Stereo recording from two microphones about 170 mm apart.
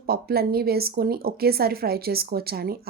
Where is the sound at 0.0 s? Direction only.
65° right (ahead or behind).